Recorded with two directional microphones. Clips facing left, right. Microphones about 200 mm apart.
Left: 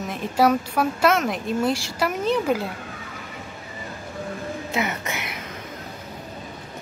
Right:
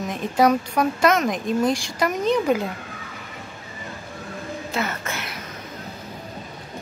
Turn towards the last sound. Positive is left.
turn(degrees=20)  # may be behind; listen again after turning